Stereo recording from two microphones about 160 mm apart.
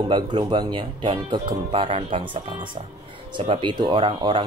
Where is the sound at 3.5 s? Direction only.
30° right (ahead or behind).